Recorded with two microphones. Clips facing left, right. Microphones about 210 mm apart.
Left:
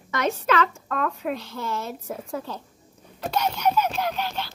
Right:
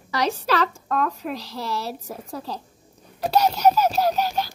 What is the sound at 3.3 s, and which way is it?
Baby laughter, 35° right (ahead or behind).